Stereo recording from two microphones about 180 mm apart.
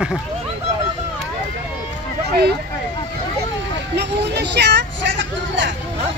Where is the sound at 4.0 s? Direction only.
70° right (ahead or behind); by 5.7 s 90° right.